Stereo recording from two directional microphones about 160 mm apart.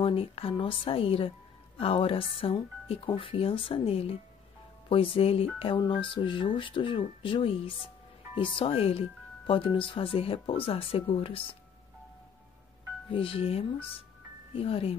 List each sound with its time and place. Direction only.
0.0 s speech: 35° left (ahead or behind)
13.1 s speech: 35° left (ahead or behind)